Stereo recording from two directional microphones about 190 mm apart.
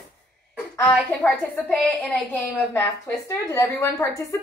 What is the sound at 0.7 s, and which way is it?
A woman's voice, 5° left (ahead or behind).